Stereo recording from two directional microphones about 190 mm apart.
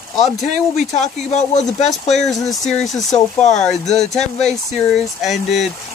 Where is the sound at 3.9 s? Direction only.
5° left (ahead or behind).